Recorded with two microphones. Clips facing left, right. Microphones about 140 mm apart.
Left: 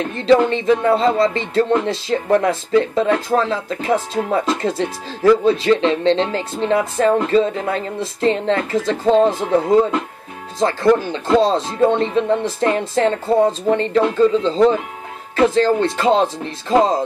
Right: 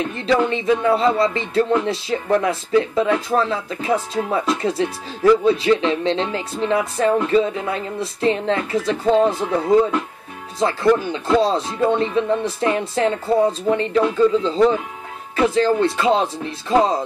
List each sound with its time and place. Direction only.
0.3 s speech: 35° left (ahead or behind)